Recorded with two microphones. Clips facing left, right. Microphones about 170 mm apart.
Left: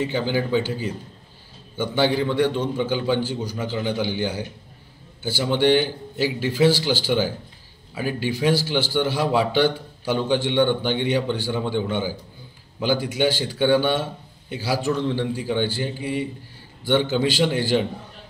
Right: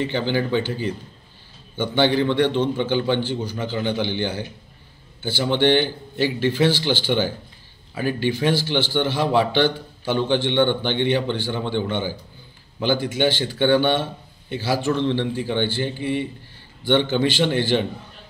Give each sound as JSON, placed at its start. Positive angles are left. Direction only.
{"t": 0.0, "sound": "a man's voice", "side_deg": 5}